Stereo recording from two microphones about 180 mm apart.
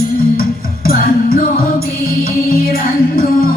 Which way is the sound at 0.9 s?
55° left (ahead or behind).